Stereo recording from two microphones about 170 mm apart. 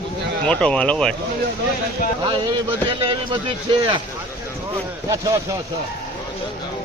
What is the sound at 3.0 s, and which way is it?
Speech, 30° right (ahead or behind).